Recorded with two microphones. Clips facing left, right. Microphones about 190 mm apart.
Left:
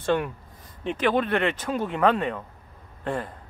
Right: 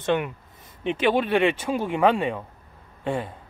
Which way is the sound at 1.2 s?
10° right (ahead or behind).